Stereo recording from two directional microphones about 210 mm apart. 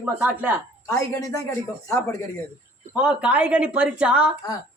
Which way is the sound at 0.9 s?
15° left (ahead or behind).